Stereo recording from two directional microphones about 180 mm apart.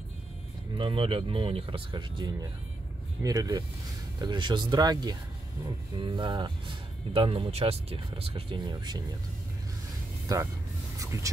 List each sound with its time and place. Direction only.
0.7 s speech: 30° right (ahead or behind)
10.2 s speech: 20° right (ahead or behind)